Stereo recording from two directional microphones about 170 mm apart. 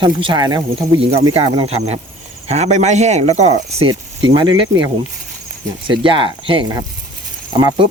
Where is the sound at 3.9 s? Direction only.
25° right (ahead or behind).